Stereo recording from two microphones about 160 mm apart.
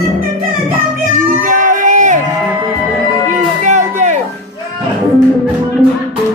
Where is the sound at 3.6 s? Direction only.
50° right (ahead or behind).